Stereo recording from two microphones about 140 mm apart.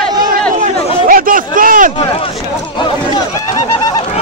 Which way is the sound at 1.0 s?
80° right.